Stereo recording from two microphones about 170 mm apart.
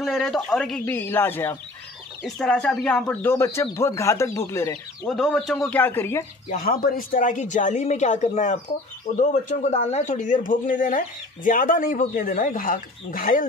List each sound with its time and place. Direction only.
0.0 s speech: centre (ahead or behind)
2.2 s speech: 5° left (ahead or behind)
5.0 s speech: 5° left (ahead or behind)
6.5 s speech: 60° left (ahead or behind)